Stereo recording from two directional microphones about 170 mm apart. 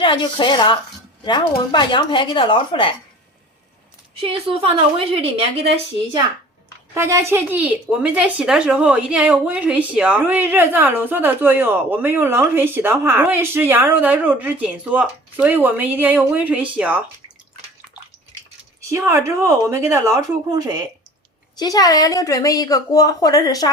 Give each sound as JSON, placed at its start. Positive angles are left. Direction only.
{"t": 0.0, "sound": "a woman's voice", "side_deg": 30}
{"t": 4.2, "sound": "a woman's voice", "side_deg": -35}
{"t": 6.9, "sound": "a woman's voice", "side_deg": -15}
{"t": 18.8, "sound": "a woman's voice", "side_deg": -15}
{"t": 21.6, "sound": "a woman's voice", "side_deg": 20}